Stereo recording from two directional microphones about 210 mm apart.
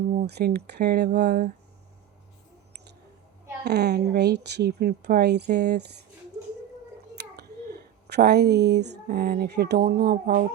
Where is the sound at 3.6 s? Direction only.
50° right (ahead or behind).